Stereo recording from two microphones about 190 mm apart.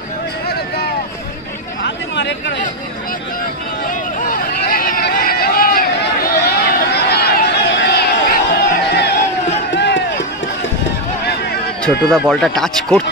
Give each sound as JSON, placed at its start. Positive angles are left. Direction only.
{"t": 1.8, "sound": "chatter", "side_deg": 70}
{"t": 4.3, "sound": "a sound", "side_deg": 50}
{"t": 9.8, "sound": "run", "side_deg": 65}
{"t": 11.8, "sound": "speech", "side_deg": 5}